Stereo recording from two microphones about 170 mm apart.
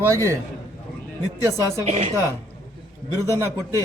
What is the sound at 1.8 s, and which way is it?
Speech, 40° right (ahead or behind).